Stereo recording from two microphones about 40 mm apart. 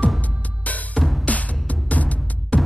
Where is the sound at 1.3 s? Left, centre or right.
Left.